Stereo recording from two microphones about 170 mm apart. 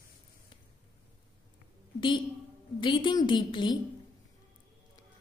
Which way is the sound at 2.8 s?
30° left (ahead or behind).